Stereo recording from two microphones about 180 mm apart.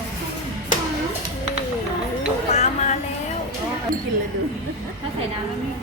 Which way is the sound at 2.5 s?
40° left (ahead or behind).